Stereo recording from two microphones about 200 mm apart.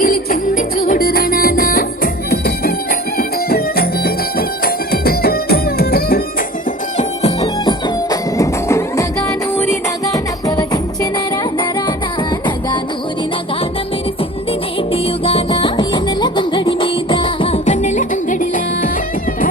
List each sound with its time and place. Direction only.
0.0 s music: 45° left (ahead or behind)
6.9 s music: 35° left (ahead or behind)
14.9 s music: 30° left (ahead or behind)